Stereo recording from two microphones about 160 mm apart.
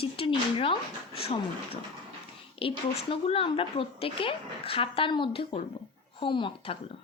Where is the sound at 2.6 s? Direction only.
35° left (ahead or behind).